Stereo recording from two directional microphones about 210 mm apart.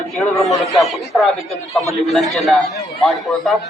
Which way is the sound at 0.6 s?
Centre (ahead or behind).